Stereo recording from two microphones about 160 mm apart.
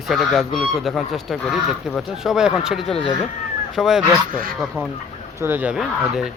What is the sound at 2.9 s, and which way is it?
Speech, 35° left (ahead or behind).